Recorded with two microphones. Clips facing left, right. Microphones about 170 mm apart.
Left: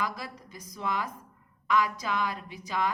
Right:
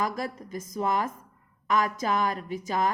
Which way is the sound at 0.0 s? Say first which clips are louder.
Right 5 dB; 45° right (ahead or behind).